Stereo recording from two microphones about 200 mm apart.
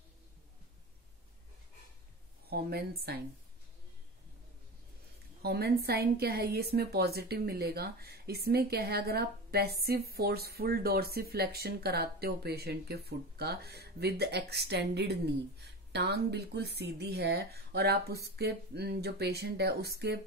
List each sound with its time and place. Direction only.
2.5 s a woman's voice: 50° right (ahead or behind)
5.4 s a woman's voice: 50° right (ahead or behind)